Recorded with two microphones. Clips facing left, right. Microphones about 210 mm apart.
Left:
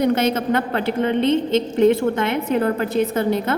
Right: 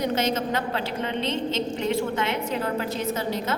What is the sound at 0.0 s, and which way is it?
A woman's voice, 55° left (ahead or behind).